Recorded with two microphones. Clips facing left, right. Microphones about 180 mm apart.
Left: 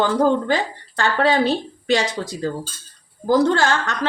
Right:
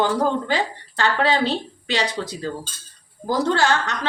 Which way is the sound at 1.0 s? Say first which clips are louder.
Left 2 dB; 45° left (ahead or behind).